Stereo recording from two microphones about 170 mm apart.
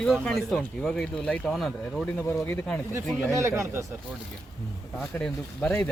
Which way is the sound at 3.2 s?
15° right (ahead or behind).